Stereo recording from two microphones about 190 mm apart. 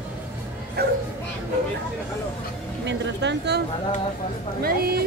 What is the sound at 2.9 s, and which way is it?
Speech, 65° right (ahead or behind).